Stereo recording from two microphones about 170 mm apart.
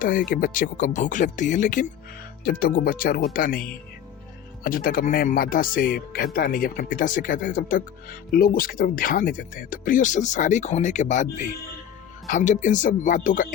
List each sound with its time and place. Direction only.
0.0 s speech: 55° left (ahead or behind)
2.4 s speech: 60° left (ahead or behind)